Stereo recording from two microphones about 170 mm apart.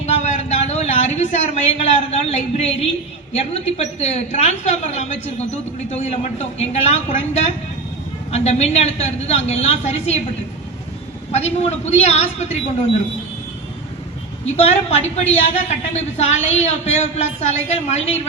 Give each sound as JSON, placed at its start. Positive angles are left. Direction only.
{"t": 0.0, "sound": "a sound", "side_deg": 40}
{"t": 3.3, "sound": "a woman's voice", "side_deg": 40}
{"t": 11.3, "sound": "a woman's voice", "side_deg": 40}
{"t": 14.4, "sound": "a woman's voice", "side_deg": 40}